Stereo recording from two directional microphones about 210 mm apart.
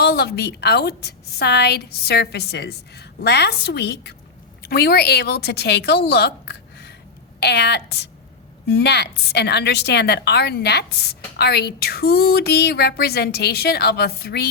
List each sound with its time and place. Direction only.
0.0 s a woman's voice: 50° left (ahead or behind)